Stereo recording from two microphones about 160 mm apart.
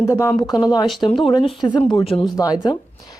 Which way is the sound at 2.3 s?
20° left (ahead or behind).